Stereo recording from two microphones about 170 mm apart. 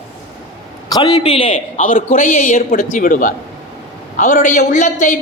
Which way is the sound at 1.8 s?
50° left (ahead or behind).